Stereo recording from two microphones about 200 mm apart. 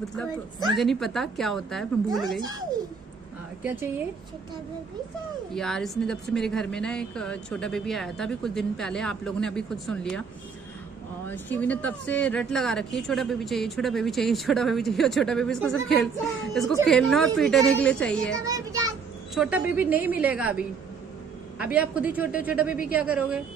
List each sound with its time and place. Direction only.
0.7 s speech: centre (ahead or behind)
5.5 s speech: centre (ahead or behind)
11.2 s speech: 10° left (ahead or behind)
18.4 s a child's voice: 15° right (ahead or behind)
19.3 s a woman's voice: 5° right (ahead or behind)